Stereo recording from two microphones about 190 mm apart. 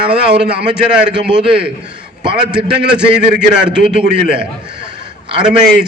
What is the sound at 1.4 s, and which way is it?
Speech, 30° right (ahead or behind).